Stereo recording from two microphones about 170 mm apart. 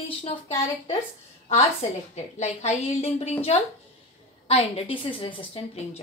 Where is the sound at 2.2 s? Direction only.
40° left (ahead or behind).